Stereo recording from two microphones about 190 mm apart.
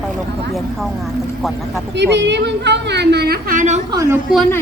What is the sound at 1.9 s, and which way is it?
A woman's voice, 65° right (ahead or behind).